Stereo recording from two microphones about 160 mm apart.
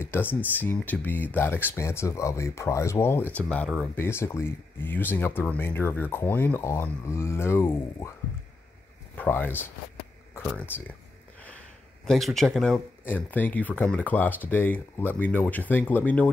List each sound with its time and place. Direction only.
0.0 s speech: 15° left (ahead or behind)
9.1 s speech: 10° left (ahead or behind)
12.1 s speech: centre (ahead or behind)